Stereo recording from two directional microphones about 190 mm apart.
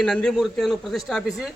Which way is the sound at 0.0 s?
5° left (ahead or behind).